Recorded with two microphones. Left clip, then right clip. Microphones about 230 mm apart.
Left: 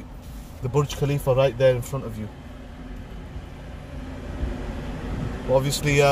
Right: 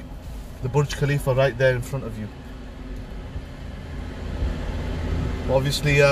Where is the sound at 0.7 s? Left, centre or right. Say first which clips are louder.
Even; left.